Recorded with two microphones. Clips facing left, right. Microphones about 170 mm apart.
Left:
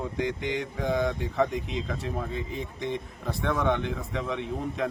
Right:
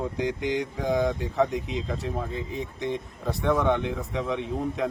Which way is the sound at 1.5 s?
60° left (ahead or behind).